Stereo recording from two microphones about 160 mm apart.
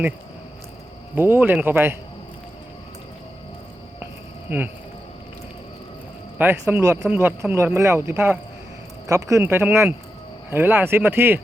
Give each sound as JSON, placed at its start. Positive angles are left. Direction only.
{"t": 1.1, "sound": "speech", "side_deg": -15}
{"t": 4.0, "sound": "a sound", "side_deg": -10}
{"t": 6.4, "sound": "speech", "side_deg": -15}